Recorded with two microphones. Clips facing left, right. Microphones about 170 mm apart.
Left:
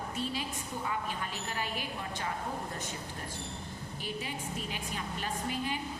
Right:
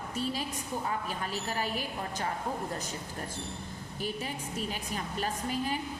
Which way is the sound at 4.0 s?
40° right (ahead or behind).